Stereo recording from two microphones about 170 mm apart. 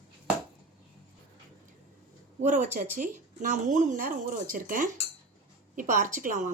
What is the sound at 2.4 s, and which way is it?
Speech, 45° right (ahead or behind).